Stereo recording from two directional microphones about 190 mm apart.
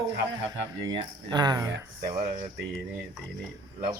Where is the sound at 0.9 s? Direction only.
20° right (ahead or behind).